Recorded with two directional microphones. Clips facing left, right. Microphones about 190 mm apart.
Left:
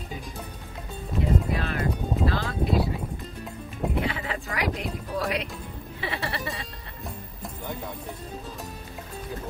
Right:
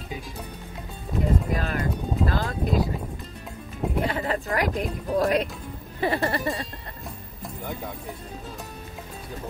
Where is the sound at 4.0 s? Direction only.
40° right (ahead or behind).